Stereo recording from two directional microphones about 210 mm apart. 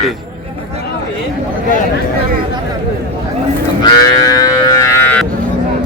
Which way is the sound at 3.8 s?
20° left (ahead or behind).